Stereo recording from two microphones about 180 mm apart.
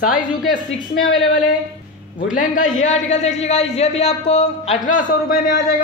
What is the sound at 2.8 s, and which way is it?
Speech, 40° left (ahead or behind).